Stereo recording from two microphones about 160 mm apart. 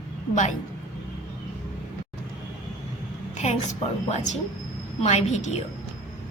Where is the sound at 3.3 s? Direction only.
45° left (ahead or behind).